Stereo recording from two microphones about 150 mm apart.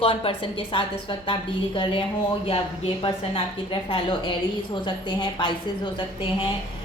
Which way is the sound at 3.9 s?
35° left (ahead or behind).